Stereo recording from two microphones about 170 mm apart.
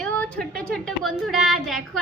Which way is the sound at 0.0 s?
5° left (ahead or behind).